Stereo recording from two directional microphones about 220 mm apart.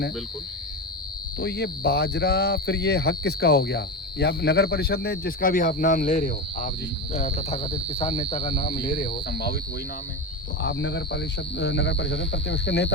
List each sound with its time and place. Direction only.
1.4 s speech: 50° left (ahead or behind); by 8.5 s 20° left (ahead or behind)
8.9 s speech: 45° left (ahead or behind)
10.6 s speech: 55° left (ahead or behind)